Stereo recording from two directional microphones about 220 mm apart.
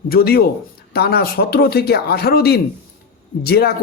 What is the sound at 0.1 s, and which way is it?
A man's voice, 45° left (ahead or behind).